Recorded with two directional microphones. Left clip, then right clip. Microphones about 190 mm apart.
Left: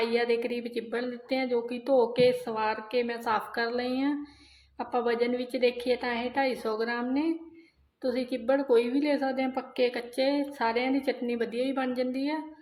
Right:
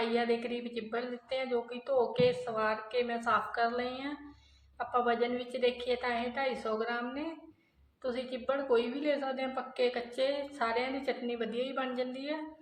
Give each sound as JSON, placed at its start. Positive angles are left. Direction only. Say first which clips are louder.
{"t": 0.0, "sound": "a woman's voice", "louder": "left 4 dB", "side_deg": 50}